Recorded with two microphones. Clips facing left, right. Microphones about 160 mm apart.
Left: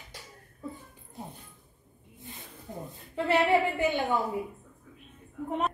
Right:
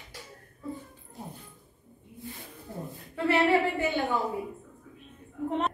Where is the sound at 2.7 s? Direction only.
15° left (ahead or behind).